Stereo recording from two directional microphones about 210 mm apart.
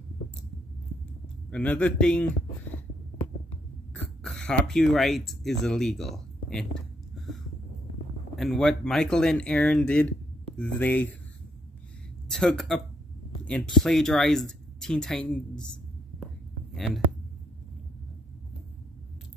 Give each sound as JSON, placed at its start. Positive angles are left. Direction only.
{"t": 1.5, "sound": "a man's voice", "side_deg": 5}
{"t": 3.9, "sound": "throat clearing", "side_deg": 5}
{"t": 5.6, "sound": "speech", "side_deg": 0}
{"t": 8.4, "sound": "speech", "side_deg": 0}
{"t": 12.3, "sound": "speech", "side_deg": 5}
{"t": 16.7, "sound": "speech", "side_deg": 0}